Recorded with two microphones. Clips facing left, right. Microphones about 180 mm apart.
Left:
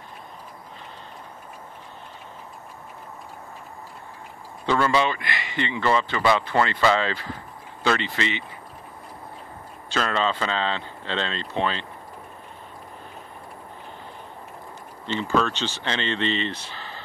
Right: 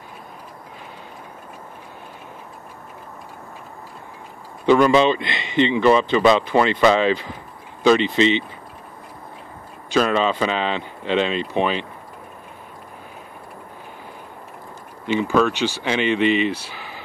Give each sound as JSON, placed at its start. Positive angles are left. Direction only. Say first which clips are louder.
{"t": 4.6, "sound": "speech", "louder": "right 7 dB", "side_deg": -15}
{"t": 9.8, "sound": "speech", "louder": "right 6 dB", "side_deg": -15}
{"t": 15.0, "sound": "speech", "louder": "right 5 dB", "side_deg": -10}